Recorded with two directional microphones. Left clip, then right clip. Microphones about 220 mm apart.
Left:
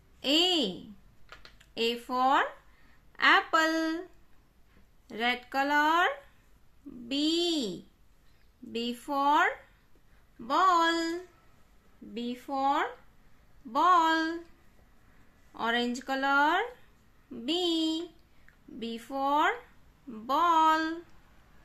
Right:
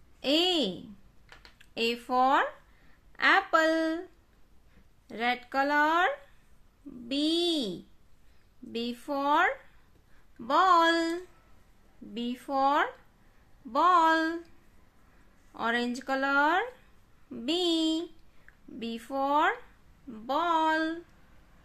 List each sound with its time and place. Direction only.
0.2 s a sound: 10° right (ahead or behind)
1.7 s speech: 15° right (ahead or behind)
5.0 s speech: 10° right (ahead or behind); by 12.8 s 25° right (ahead or behind)
13.7 s speech: 15° right (ahead or behind)
15.5 s speech: 10° right (ahead or behind)